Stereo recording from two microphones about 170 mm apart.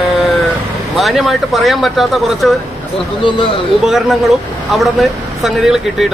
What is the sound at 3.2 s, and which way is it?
Speech, 30° left (ahead or behind).